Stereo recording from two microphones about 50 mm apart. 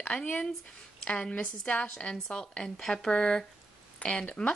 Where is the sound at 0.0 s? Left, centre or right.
Left.